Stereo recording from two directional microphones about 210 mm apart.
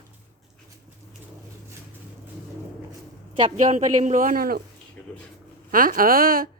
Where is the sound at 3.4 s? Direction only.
30° right (ahead or behind).